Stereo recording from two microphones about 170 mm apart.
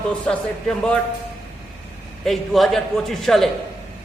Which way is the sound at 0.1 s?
5° left (ahead or behind).